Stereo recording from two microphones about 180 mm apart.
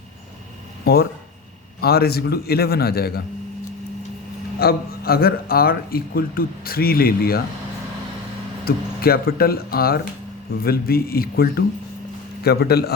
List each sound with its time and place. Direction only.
1.8 s a man's voice: 60° left (ahead or behind)
4.6 s a man's voice: 55° left (ahead or behind)
8.6 s a man's voice: 55° left (ahead or behind)